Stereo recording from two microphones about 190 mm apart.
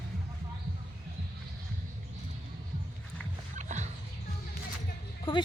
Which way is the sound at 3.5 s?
40° right (ahead or behind).